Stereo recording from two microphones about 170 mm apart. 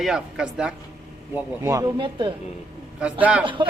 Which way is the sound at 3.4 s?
30° right (ahead or behind).